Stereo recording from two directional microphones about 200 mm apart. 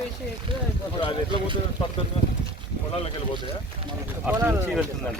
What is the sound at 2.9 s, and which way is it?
Speech, 30° left (ahead or behind).